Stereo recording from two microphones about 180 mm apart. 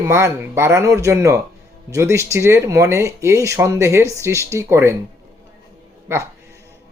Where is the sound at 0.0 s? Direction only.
15° right (ahead or behind).